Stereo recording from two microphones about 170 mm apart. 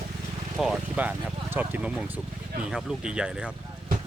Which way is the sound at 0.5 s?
5° right (ahead or behind).